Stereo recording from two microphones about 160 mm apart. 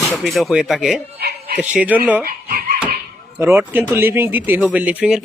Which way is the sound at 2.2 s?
65° right (ahead or behind).